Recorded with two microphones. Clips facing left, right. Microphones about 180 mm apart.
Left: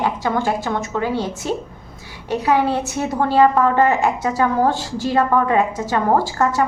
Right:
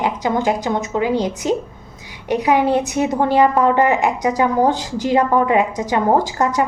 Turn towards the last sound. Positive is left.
turn(degrees=-20)  # may be behind; listen again after turning